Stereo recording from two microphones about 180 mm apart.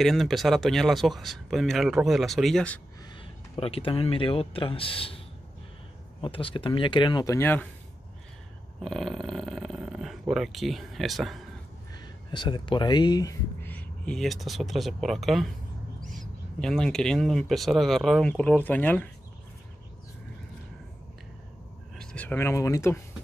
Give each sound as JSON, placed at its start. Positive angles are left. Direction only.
{"t": 0.0, "sound": "speech", "side_deg": 0}
{"t": 3.5, "sound": "a man's voice", "side_deg": 30}
{"t": 6.2, "sound": "speech", "side_deg": 30}
{"t": 7.3, "sound": "speech", "side_deg": 10}
{"t": 8.8, "sound": "speech", "side_deg": 0}
{"t": 12.0, "sound": "speech", "side_deg": 25}
{"t": 21.9, "sound": "speech", "side_deg": 5}